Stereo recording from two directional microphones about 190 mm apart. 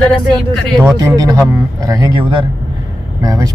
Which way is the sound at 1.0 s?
20° right (ahead or behind).